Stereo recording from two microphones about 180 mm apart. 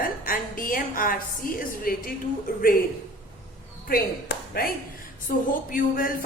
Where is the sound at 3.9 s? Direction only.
55° left (ahead or behind).